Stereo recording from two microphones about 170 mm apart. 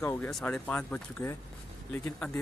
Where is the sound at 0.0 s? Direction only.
15° left (ahead or behind).